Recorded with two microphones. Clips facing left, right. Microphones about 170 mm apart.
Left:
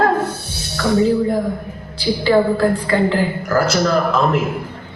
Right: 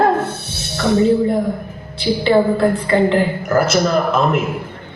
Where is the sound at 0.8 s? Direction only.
20° right (ahead or behind).